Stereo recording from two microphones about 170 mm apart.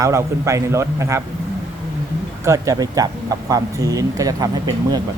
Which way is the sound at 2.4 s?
20° right (ahead or behind).